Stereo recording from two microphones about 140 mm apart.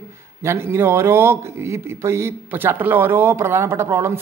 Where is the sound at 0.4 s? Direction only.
20° right (ahead or behind).